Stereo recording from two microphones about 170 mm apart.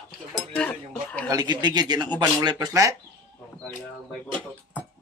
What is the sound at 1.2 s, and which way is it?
A man's voice, 25° right (ahead or behind).